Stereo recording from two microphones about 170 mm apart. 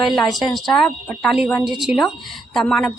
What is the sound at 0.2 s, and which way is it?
Speech, centre (ahead or behind).